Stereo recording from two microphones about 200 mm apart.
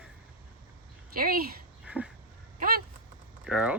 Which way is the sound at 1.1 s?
45° right (ahead or behind).